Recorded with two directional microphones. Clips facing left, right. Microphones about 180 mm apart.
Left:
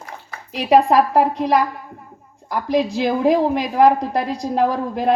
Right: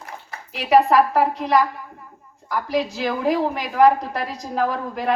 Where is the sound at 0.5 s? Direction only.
35° left (ahead or behind).